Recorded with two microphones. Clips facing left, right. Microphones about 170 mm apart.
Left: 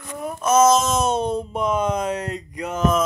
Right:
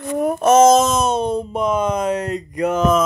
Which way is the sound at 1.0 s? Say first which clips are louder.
Right 2 dB; 75° right (ahead or behind).